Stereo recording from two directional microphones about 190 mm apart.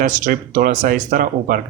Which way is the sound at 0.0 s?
45° right (ahead or behind).